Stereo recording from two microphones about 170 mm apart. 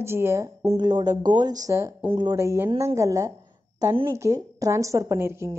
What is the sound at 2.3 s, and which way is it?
A woman's voice, 15° right (ahead or behind).